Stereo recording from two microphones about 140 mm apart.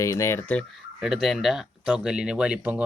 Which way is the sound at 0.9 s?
5° right (ahead or behind).